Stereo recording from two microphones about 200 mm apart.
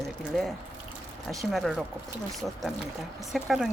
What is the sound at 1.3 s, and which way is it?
Speech, centre (ahead or behind).